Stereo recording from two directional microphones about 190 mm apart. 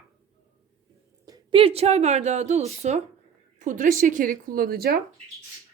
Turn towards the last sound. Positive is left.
turn(degrees=-50)  # may be behind; listen again after turning